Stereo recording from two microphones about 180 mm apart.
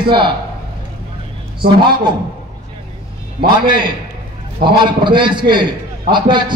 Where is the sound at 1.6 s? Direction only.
25° right (ahead or behind).